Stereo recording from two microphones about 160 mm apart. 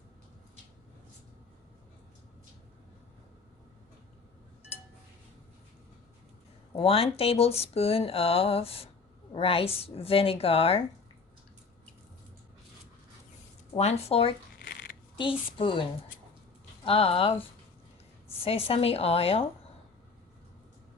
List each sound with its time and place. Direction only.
6.7 s a woman's voice: 35° left (ahead or behind)
13.7 s speech: 40° left (ahead or behind)
14.6 s a sound: 85° left
15.2 s speech: 30° left (ahead or behind)
18.4 s speech: 35° left (ahead or behind)